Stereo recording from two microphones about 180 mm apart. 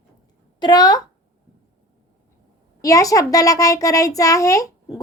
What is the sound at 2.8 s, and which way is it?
A child's voice, 20° left (ahead or behind).